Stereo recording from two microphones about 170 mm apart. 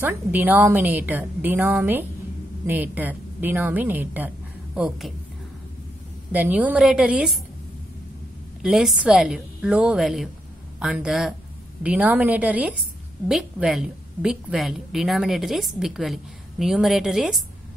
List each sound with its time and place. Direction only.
0.0 s a woman's voice: 10° right (ahead or behind)
6.3 s a woman's voice: 10° right (ahead or behind)
8.6 s a woman's voice: centre (ahead or behind)